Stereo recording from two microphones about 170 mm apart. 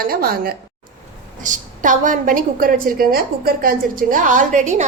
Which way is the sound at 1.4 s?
50° right (ahead or behind).